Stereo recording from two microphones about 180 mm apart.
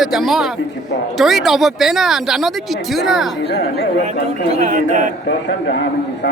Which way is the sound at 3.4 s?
70° left (ahead or behind).